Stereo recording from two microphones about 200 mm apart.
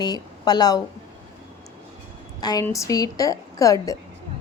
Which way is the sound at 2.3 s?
20° left (ahead or behind).